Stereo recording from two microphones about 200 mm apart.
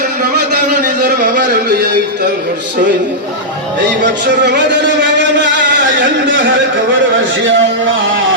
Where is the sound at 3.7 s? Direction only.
60° right (ahead or behind).